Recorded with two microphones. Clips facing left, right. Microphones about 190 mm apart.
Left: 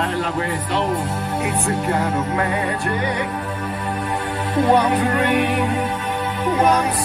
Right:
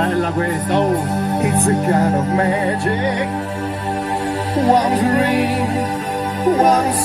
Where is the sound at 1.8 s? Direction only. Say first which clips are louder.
Right 5 dB; 40° right (ahead or behind).